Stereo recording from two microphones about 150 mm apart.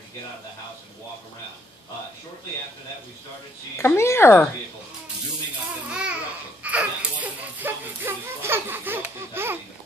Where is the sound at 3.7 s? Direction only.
20° left (ahead or behind).